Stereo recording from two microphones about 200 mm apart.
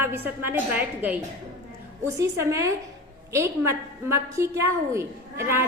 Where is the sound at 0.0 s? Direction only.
10° right (ahead or behind).